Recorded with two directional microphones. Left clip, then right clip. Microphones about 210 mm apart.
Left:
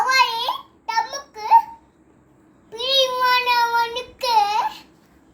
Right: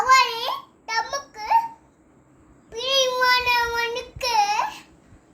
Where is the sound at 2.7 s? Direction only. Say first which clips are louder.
Left 2 dB; 10° right (ahead or behind).